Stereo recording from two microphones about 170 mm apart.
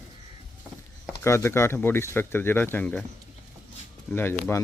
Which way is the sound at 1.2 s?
15° left (ahead or behind).